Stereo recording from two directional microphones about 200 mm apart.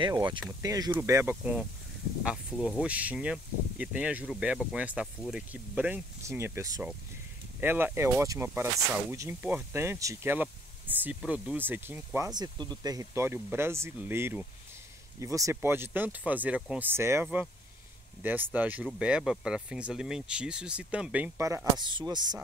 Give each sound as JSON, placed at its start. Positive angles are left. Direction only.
{"t": 0.0, "sound": "speech", "side_deg": -25}
{"t": 2.8, "sound": "speech", "side_deg": -5}
{"t": 12.4, "sound": "speech", "side_deg": -20}